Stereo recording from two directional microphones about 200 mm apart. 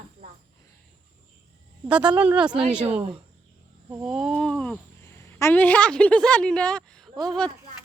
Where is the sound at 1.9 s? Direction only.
5° right (ahead or behind).